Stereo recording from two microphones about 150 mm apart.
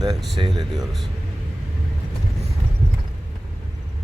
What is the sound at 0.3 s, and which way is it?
Speech, 30° right (ahead or behind).